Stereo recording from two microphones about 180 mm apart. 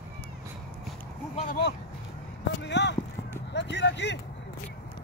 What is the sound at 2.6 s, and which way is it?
Speech, 75° left (ahead or behind).